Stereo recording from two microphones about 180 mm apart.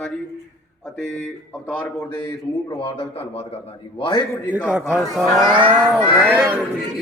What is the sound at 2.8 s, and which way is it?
A man's voice, 30° left (ahead or behind).